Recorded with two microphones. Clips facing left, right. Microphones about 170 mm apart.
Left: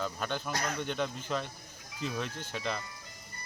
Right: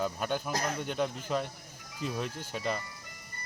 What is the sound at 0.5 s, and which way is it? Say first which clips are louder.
Speech: right 2 dB; 30° right (ahead or behind).